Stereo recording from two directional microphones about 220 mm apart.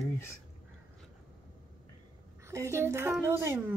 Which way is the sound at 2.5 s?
15° right (ahead or behind).